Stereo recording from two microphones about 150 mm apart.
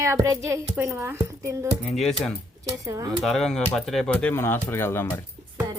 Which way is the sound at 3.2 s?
Centre (ahead or behind).